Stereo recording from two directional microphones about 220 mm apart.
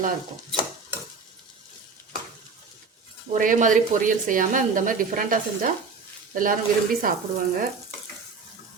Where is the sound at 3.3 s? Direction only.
35° right (ahead or behind).